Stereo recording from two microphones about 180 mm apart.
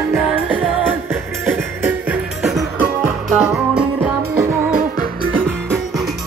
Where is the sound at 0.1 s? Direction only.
10° right (ahead or behind).